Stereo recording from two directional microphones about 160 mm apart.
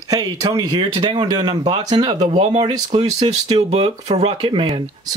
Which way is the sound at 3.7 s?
40° right (ahead or behind).